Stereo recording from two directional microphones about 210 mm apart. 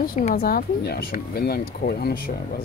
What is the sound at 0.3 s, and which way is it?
Speech, 45° left (ahead or behind).